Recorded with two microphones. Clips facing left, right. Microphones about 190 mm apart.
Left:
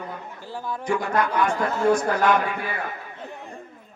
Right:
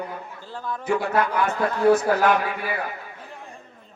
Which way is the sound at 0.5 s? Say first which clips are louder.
Right 1 dB; 10° left (ahead or behind).